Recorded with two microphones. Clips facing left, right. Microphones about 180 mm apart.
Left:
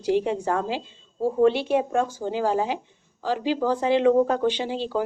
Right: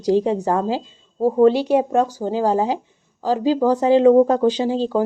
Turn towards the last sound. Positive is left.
turn(degrees=-40)  # may be behind; listen again after turning